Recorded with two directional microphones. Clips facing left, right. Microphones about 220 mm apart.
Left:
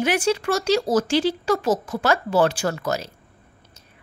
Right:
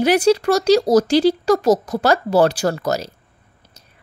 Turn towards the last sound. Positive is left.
turn(degrees=-40)  # may be behind; listen again after turning